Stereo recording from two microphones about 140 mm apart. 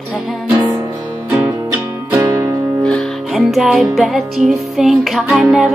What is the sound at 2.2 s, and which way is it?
Music, 25° right (ahead or behind).